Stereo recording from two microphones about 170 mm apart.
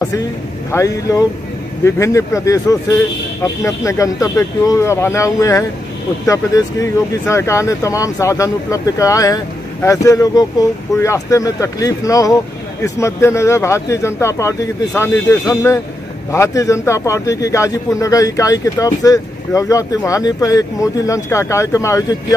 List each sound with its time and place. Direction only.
0.7 s speech: 20° left (ahead or behind)